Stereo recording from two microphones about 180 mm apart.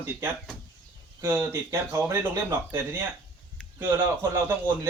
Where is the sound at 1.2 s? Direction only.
10° right (ahead or behind).